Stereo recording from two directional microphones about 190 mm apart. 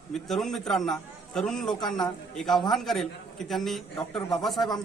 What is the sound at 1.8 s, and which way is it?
Speech, 20° left (ahead or behind).